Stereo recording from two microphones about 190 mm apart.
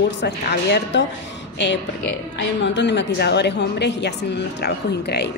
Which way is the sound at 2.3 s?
65° left (ahead or behind).